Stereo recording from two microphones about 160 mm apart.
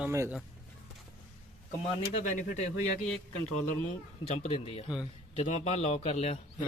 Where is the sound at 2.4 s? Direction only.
50° left (ahead or behind).